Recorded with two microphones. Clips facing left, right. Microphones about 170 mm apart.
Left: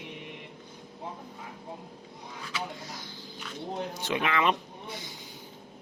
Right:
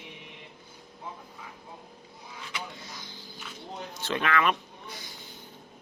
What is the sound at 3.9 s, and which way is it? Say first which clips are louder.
Speech: right 3 dB; 15° left (ahead or behind).